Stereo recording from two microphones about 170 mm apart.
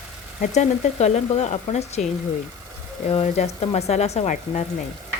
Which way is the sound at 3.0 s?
40° left (ahead or behind).